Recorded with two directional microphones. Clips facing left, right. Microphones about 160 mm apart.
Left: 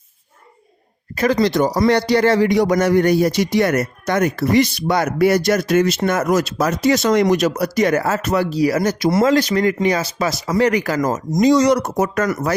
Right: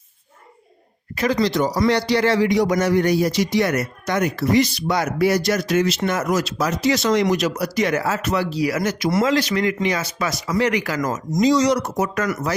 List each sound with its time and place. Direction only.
1.1 s speech: 50° left (ahead or behind)
11.4 s speech: 55° left (ahead or behind)